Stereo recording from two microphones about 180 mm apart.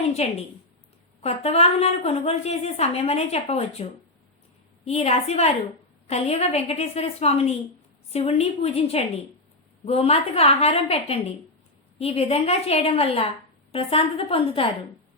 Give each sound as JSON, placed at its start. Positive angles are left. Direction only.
{"t": 0.0, "sound": "a woman's voice", "side_deg": 35}
{"t": 4.9, "sound": "a woman's voice", "side_deg": 35}